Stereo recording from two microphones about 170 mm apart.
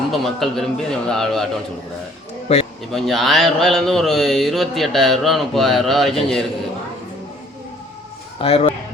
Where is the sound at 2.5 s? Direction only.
40° left (ahead or behind).